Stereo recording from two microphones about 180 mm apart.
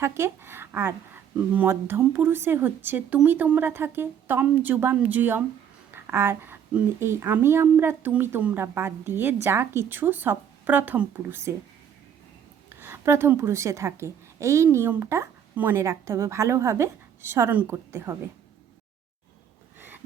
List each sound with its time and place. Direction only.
0.0 s speech: 15° right (ahead or behind)
12.8 s speech: 15° right (ahead or behind)